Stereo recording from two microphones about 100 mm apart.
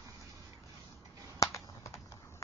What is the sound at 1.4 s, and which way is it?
Typing, 30° left (ahead or behind).